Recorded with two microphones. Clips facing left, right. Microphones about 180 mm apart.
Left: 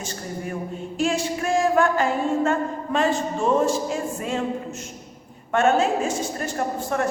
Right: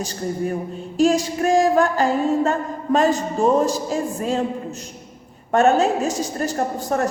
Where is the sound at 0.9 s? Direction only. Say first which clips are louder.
Right 6 dB; 40° right (ahead or behind).